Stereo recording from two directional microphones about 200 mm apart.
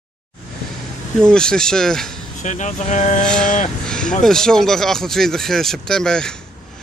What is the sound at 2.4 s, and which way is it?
Speech, 35° left (ahead or behind).